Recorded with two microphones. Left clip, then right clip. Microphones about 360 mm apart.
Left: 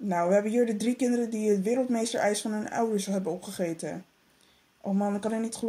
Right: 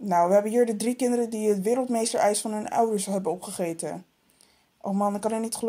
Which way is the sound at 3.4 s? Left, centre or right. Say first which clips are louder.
Right 2 dB; right.